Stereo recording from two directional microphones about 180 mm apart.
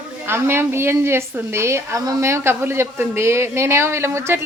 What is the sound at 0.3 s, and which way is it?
A woman's voice, 15° right (ahead or behind).